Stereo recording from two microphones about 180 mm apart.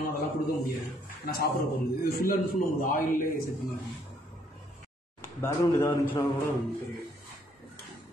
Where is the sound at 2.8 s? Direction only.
50° left (ahead or behind).